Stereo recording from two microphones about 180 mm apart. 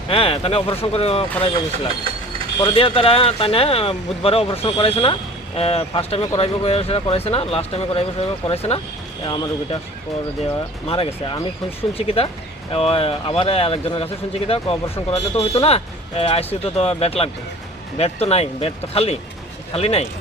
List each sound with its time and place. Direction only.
0.1 s speech: 30° left (ahead or behind)
9.2 s speech: 25° left (ahead or behind)
10.8 s speech: 30° left (ahead or behind)